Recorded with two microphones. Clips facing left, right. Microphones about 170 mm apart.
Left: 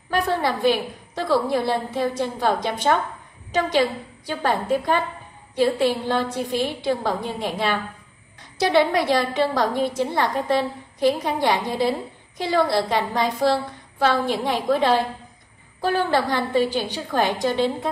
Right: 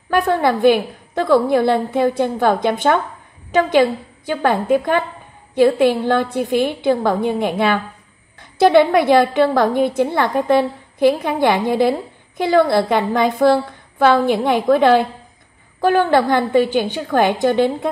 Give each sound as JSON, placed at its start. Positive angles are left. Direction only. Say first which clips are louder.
{"t": 0.1, "sound": "a woman's voice", "louder": "right 6 dB", "side_deg": -55}
{"t": 4.3, "sound": "a woman's voice", "louder": "right 6 dB", "side_deg": -60}